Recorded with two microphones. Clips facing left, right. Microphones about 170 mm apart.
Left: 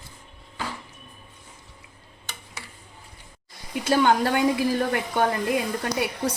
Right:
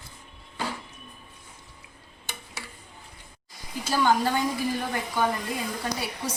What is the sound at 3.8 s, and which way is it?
Speech, 60° left (ahead or behind).